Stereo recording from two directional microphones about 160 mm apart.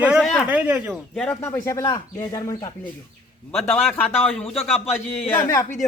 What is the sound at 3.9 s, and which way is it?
Speech, 10° left (ahead or behind).